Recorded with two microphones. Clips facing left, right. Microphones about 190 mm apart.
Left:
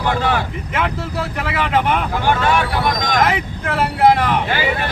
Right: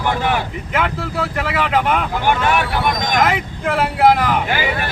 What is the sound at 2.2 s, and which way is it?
Speech, 15° right (ahead or behind).